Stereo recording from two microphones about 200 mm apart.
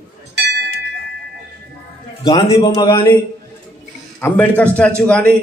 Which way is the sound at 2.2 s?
20° left (ahead or behind).